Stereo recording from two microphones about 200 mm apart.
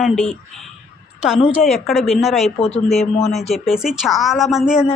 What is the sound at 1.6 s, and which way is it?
Speech, centre (ahead or behind).